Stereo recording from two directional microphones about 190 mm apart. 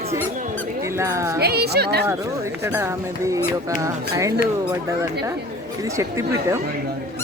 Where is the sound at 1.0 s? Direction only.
15° right (ahead or behind).